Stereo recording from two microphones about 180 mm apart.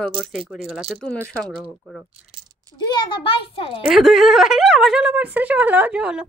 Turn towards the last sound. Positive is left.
turn(degrees=-5)  # may be behind; listen again after turning